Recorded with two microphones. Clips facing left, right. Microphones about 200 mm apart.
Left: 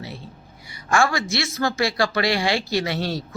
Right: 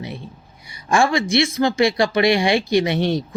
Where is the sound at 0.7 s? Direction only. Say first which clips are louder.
Right 3 dB; 20° right (ahead or behind).